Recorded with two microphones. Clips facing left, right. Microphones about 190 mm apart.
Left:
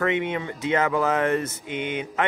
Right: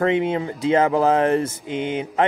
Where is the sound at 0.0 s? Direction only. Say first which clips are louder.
Right 5 dB; 30° right (ahead or behind).